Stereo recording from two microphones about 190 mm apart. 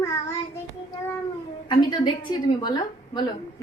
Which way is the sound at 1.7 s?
25° left (ahead or behind).